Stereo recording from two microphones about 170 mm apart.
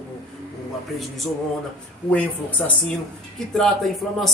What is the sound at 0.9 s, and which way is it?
Speech, centre (ahead or behind).